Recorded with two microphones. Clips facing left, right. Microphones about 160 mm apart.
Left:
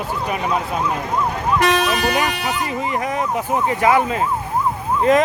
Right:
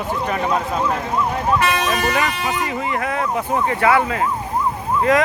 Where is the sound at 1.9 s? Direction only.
15° left (ahead or behind).